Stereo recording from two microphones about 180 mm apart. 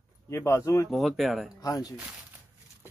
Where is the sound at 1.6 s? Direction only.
20° left (ahead or behind).